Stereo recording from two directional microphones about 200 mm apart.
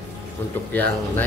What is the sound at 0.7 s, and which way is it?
Speech, 10° left (ahead or behind).